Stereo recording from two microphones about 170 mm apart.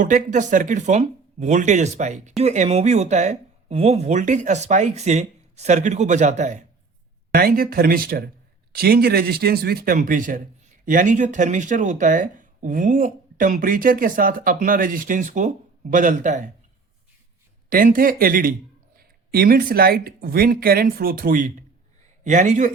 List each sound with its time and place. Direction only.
0.0 s speech: 50° right (ahead or behind)
7.3 s speech: 60° right (ahead or behind)
17.7 s speech: 55° right (ahead or behind)